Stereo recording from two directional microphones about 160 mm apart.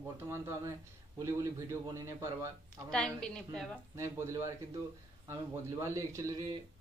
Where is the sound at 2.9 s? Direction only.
5° left (ahead or behind).